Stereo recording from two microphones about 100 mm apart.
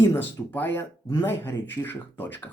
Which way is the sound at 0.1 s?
20° left (ahead or behind).